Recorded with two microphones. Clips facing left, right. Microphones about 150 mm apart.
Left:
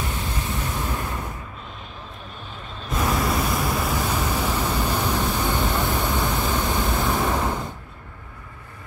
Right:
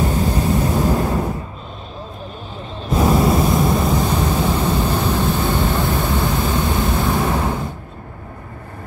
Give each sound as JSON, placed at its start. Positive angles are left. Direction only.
{"t": 0.0, "sound": "waves", "side_deg": -40}
{"t": 2.9, "sound": "waves", "side_deg": -30}